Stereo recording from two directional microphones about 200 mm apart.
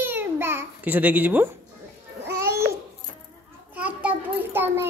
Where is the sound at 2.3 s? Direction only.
15° right (ahead or behind).